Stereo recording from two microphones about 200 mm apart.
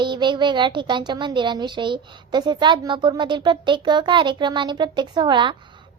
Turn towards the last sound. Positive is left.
turn(degrees=-25)  # may be behind; listen again after turning